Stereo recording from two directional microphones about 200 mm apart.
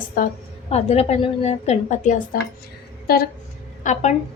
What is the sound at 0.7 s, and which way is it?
A woman's voice, 30° left (ahead or behind).